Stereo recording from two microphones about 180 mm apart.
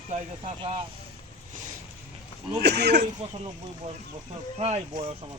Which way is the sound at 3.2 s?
35° right (ahead or behind).